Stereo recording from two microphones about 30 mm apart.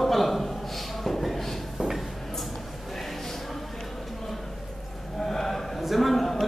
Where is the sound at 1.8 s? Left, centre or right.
Centre.